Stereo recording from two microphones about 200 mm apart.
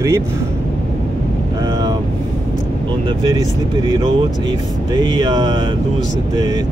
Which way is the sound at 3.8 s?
20° right (ahead or behind).